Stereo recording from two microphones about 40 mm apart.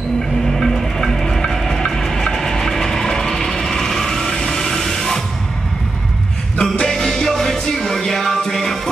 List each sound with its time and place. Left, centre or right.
0.5 s music: centre
1.9 s a sound: centre
6.5 s music: left